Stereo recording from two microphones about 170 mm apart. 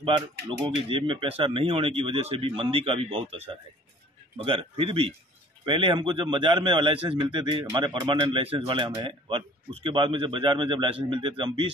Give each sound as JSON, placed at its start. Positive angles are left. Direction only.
{"t": 0.0, "sound": "a man's voice", "side_deg": -30}